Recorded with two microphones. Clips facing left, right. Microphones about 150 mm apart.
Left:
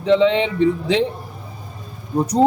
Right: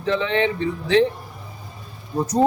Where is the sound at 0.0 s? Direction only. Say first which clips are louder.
Left 6 dB; 20° left (ahead or behind).